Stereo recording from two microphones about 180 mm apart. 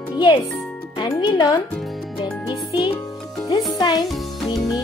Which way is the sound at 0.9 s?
20° left (ahead or behind).